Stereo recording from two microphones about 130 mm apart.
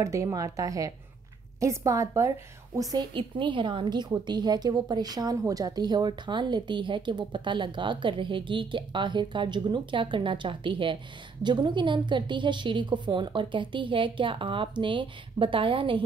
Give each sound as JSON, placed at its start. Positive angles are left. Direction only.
{"t": 0.0, "sound": "a woman's voice", "side_deg": -25}
{"t": 3.2, "sound": "a woman's voice", "side_deg": -40}